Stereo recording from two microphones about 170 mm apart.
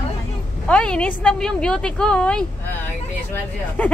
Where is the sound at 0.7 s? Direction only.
5° left (ahead or behind).